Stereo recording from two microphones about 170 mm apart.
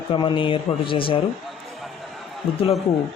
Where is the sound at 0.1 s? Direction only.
30° left (ahead or behind).